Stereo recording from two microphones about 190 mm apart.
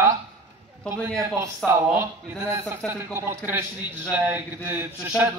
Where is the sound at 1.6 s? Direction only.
15° right (ahead or behind).